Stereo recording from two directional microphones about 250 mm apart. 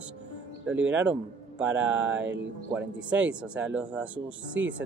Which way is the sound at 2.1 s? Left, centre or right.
Right.